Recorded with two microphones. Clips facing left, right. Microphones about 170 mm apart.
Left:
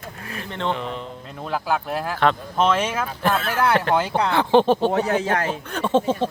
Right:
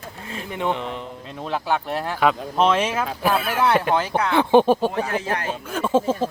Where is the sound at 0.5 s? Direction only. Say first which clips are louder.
Right 1 dB; 15° right (ahead or behind).